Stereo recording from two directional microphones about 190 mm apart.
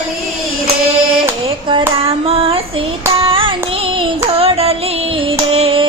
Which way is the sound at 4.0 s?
30° right (ahead or behind).